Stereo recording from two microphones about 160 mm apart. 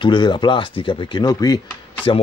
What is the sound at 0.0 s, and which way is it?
Speech, 30° left (ahead or behind).